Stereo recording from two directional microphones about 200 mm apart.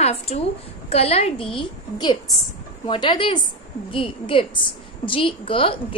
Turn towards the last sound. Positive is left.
turn(degrees=25)  # may be behind; listen again after turning